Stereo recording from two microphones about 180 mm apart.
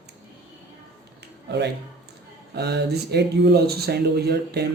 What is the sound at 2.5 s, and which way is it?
Speech, 65° right (ahead or behind).